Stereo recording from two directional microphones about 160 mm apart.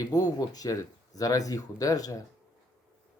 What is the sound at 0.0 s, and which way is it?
Speech, 20° left (ahead or behind).